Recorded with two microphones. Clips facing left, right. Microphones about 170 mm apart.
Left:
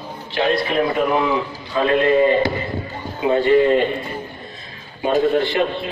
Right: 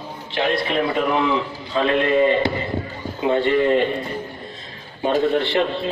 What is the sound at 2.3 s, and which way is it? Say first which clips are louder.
Speech: left 2 dB; 25° right (ahead or behind).